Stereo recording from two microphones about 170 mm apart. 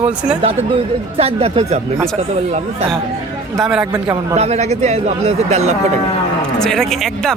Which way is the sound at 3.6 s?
5° right (ahead or behind).